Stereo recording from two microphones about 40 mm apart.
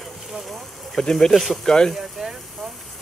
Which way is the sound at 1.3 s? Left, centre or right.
Centre.